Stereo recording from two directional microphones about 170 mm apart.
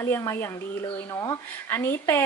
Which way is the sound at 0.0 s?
15° left (ahead or behind).